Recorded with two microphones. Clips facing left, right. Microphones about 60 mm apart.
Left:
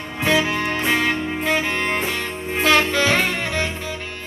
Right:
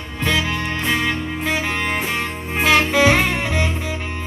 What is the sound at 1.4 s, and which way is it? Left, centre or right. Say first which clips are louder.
Music: even; centre.